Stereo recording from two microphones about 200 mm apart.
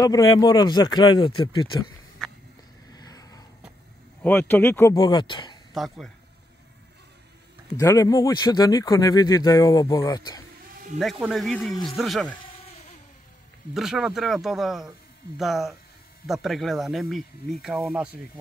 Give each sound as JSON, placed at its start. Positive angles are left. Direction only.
{"t": 0.0, "sound": "speech", "side_deg": 20}
{"t": 2.2, "sound": "walk", "side_deg": 5}
{"t": 2.9, "sound": "a sound", "side_deg": 20}
{"t": 4.2, "sound": "speech", "side_deg": 10}
{"t": 5.8, "sound": "speech", "side_deg": 0}
{"t": 7.7, "sound": "speech", "side_deg": 15}
{"t": 11.0, "sound": "speech", "side_deg": 0}
{"t": 13.7, "sound": "speech", "side_deg": 0}